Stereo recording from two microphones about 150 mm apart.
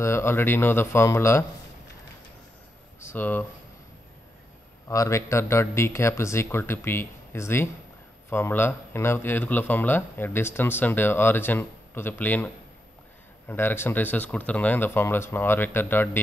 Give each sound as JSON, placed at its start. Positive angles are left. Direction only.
{"t": 0.0, "sound": "speech", "side_deg": 15}
{"t": 3.0, "sound": "speech", "side_deg": 15}
{"t": 4.8, "sound": "speech", "side_deg": 20}
{"t": 13.5, "sound": "speech", "side_deg": 15}